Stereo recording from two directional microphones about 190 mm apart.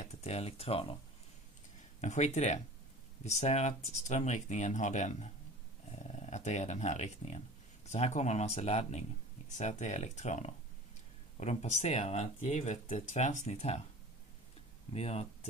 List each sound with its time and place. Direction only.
0.0 s speech: 35° left (ahead or behind)
2.0 s speech: 40° left (ahead or behind)
14.9 s speech: 35° left (ahead or behind)